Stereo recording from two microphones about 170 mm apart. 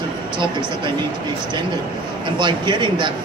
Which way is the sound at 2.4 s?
25° right (ahead or behind).